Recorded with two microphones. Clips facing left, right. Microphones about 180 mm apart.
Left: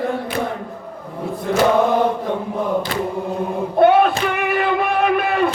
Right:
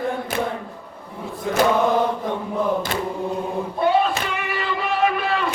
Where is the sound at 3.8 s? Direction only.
60° left (ahead or behind).